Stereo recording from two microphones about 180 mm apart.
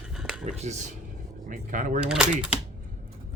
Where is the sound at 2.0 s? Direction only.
5° right (ahead or behind).